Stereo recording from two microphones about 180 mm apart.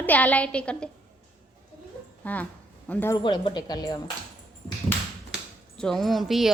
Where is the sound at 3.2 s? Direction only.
25° left (ahead or behind).